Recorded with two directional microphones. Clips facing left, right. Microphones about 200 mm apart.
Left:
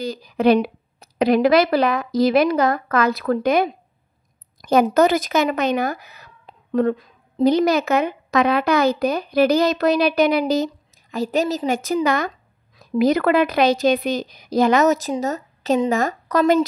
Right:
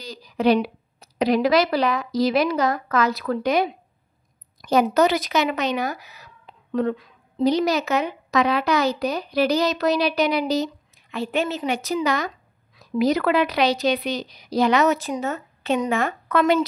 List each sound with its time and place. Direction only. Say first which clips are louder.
0.0 s a woman's voice: left 3 dB; 55° left (ahead or behind); by 16.6 s 40° left (ahead or behind)